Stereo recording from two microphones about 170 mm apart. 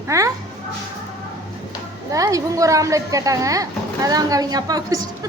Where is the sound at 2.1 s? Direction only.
20° right (ahead or behind).